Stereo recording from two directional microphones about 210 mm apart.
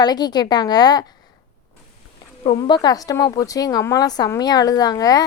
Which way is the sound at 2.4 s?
25° left (ahead or behind).